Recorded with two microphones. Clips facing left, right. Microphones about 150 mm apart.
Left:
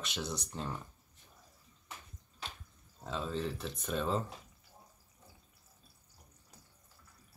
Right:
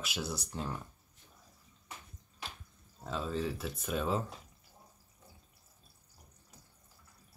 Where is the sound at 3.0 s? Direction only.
5° right (ahead or behind).